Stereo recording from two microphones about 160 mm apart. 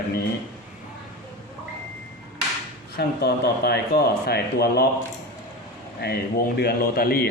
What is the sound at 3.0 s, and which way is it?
Speech, 85° left.